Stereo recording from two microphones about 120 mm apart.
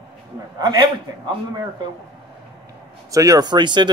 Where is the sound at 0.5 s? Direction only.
35° right (ahead or behind).